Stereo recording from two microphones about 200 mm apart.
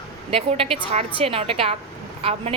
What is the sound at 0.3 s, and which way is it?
A woman's voice, 30° right (ahead or behind).